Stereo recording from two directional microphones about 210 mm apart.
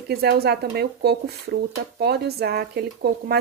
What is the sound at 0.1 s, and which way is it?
Speech, 50° right (ahead or behind).